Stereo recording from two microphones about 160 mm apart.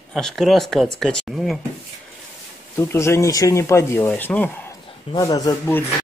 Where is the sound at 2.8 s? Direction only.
15° left (ahead or behind).